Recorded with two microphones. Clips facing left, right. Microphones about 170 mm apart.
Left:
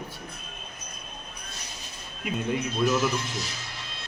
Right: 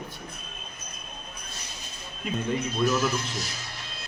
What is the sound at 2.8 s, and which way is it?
Speech, centre (ahead or behind).